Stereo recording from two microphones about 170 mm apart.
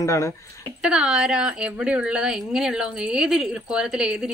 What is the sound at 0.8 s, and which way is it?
Speech, 5° right (ahead or behind).